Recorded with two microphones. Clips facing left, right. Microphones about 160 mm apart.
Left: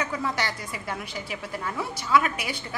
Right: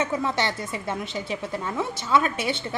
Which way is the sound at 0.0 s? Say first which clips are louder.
Right 4 dB; 25° right (ahead or behind).